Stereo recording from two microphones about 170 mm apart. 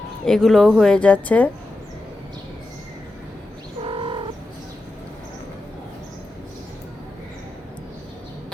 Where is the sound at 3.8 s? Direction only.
30° right (ahead or behind).